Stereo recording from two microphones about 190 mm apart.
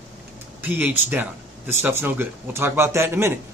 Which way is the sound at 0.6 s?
10° right (ahead or behind).